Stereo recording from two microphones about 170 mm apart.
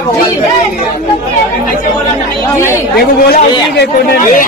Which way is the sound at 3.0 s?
70° left (ahead or behind).